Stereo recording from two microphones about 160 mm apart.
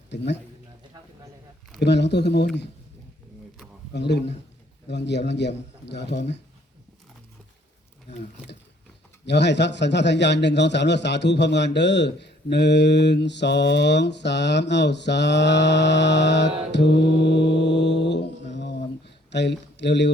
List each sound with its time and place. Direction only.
0.1 s a sound: 90° left
1.8 s a man's voice: 90° left
3.9 s a man's voice: 90° left
9.2 s a man's voice: 90° left
16.7 s mantra: 90° left